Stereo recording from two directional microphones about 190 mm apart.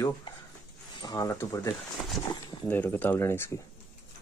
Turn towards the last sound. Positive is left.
turn(degrees=10)  # may be behind; listen again after turning